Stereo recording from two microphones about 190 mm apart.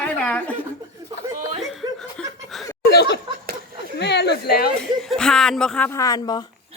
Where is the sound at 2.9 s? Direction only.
60° left (ahead or behind).